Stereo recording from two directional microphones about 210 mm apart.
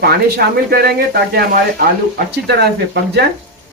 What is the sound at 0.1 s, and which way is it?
Speech, 50° right (ahead or behind).